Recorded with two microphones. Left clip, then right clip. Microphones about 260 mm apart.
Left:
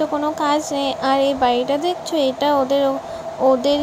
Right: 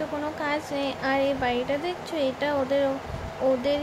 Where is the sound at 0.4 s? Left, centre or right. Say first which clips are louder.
Left 8 dB; left.